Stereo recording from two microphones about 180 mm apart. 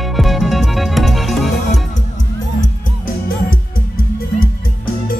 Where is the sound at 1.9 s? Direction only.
45° left (ahead or behind).